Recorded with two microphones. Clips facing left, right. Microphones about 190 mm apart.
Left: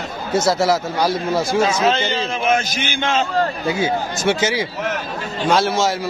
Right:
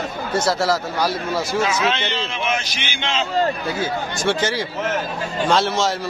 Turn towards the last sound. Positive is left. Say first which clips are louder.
# left 1 dB
turn(degrees=10)  # may be behind; listen again after turning